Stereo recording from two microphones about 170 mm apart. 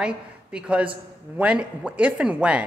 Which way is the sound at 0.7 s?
5° right (ahead or behind).